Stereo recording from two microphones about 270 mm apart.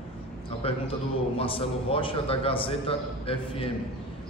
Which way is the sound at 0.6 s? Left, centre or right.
Left.